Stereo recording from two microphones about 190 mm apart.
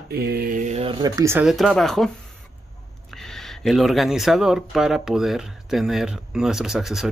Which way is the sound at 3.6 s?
Centre (ahead or behind).